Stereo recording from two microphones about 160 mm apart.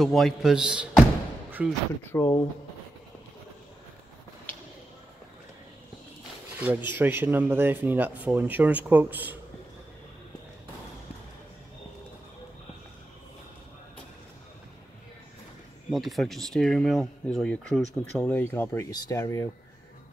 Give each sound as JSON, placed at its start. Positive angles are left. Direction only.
{"t": 0.0, "sound": "speech", "side_deg": 0}
{"t": 2.1, "sound": "speech", "side_deg": 15}
{"t": 6.6, "sound": "speech", "side_deg": -10}
{"t": 15.9, "sound": "speech", "side_deg": 0}